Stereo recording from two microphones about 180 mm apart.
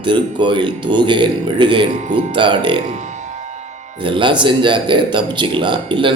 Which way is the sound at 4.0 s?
25° right (ahead or behind).